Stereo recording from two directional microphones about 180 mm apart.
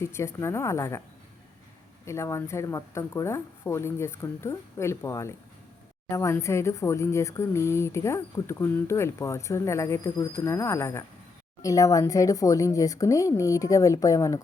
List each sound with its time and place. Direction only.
0.0 s speech: 15° left (ahead or behind)
2.0 s speech: 15° left (ahead or behind)